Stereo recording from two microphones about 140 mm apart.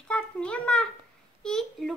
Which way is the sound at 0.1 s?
10° left (ahead or behind).